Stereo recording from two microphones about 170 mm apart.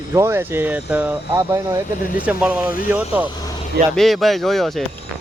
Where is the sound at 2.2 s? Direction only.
10° right (ahead or behind).